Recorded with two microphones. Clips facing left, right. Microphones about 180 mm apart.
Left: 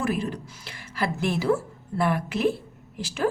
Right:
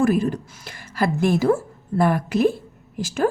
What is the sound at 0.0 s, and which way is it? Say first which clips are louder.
A woman's voice: right 8 dB; 45° right (ahead or behind).